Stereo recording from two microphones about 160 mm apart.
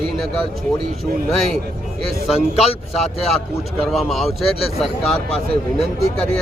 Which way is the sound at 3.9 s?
Centre (ahead or behind).